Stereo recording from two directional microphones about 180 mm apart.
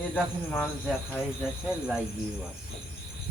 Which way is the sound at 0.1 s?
5° left (ahead or behind).